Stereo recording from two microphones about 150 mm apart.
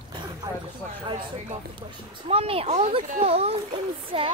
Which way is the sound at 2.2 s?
40° right (ahead or behind).